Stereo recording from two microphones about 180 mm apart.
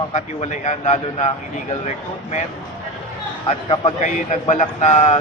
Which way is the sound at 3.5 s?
35° left (ahead or behind).